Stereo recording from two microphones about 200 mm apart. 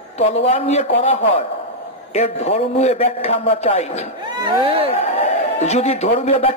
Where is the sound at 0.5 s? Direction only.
35° left (ahead or behind).